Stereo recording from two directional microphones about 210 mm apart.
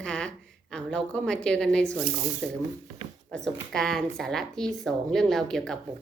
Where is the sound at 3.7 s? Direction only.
Centre (ahead or behind).